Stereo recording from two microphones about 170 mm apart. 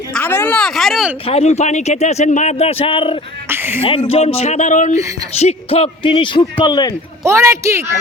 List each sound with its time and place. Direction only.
0.1 s a sound: 10° left (ahead or behind)
1.3 s speech: 35° left (ahead or behind)
3.5 s speech: 15° right (ahead or behind)
4.4 s a man's voice: 40° left (ahead or behind); by 6.9 s 25° left (ahead or behind)
7.3 s a woman's voice: 15° right (ahead or behind)